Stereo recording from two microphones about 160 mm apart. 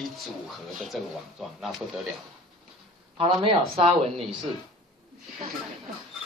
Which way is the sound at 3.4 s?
40° right (ahead or behind).